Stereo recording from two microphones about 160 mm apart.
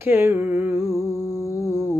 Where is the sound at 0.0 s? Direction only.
15° right (ahead or behind).